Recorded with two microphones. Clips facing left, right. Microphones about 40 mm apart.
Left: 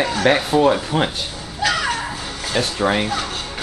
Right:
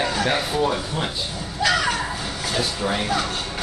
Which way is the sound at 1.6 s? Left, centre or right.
Centre.